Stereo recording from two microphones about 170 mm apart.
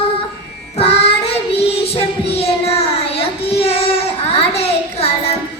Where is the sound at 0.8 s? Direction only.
35° left (ahead or behind).